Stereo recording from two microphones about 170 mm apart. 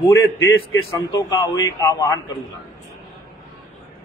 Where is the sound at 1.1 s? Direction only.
25° left (ahead or behind).